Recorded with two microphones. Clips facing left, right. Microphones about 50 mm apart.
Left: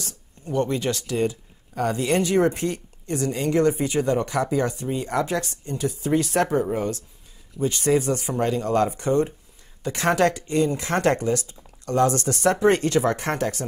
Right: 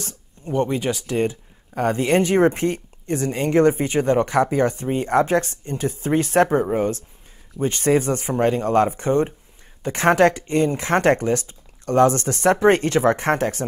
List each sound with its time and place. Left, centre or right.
0.0 s speech: right
1.0 s speech: right